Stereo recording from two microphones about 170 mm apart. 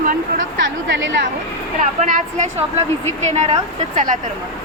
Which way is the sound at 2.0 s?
45° right (ahead or behind).